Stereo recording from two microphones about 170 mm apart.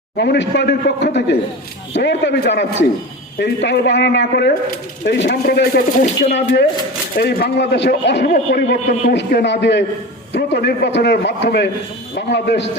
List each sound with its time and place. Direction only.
0.2 s a man's voice: 75° left (ahead or behind)
9.0 s a man's voice: 80° left